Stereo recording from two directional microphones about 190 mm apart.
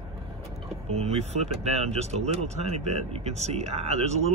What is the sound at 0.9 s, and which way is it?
Speech, 35° right (ahead or behind).